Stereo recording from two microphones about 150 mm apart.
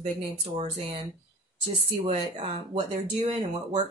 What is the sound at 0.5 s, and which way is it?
Speech, 40° right (ahead or behind).